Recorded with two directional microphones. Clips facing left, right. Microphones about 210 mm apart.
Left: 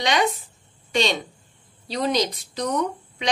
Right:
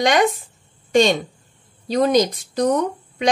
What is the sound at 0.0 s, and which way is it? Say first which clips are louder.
Speech: right 5 dB; 50° right (ahead or behind).